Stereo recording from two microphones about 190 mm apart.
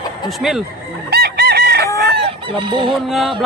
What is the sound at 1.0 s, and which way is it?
Chicken, 55° right (ahead or behind).